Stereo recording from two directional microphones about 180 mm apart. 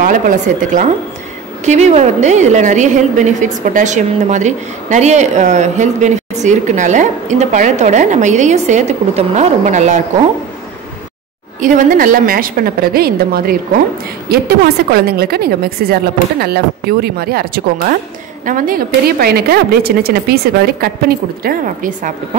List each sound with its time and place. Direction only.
0.0 s a woman's voice: 45° right (ahead or behind)
11.6 s a woman's voice: 50° right (ahead or behind)